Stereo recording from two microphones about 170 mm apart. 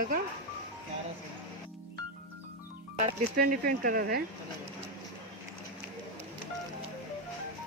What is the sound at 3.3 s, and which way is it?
Speech, 60° right (ahead or behind).